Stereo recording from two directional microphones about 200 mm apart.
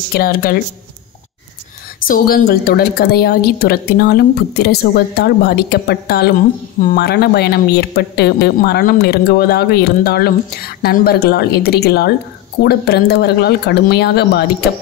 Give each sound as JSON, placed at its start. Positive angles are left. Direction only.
{"t": 0.1, "sound": "speech", "side_deg": 45}
{"t": 2.0, "sound": "speech", "side_deg": 45}